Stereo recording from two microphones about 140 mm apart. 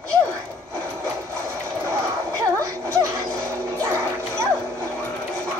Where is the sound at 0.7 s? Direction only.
20° right (ahead or behind).